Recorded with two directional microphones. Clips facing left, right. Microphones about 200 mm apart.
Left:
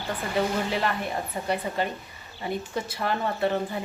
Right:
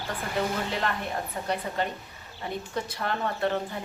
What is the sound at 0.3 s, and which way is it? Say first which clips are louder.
Speech: left 3 dB; 5° left (ahead or behind).